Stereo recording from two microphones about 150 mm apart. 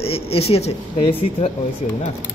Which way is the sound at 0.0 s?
40° left (ahead or behind).